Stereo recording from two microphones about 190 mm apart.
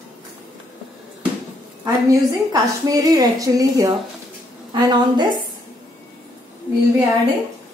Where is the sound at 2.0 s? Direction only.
20° right (ahead or behind).